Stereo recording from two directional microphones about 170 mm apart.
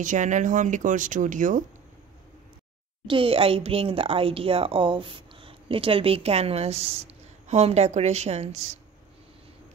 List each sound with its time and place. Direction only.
0.0 s speech: 45° right (ahead or behind)
3.1 s speech: 30° right (ahead or behind)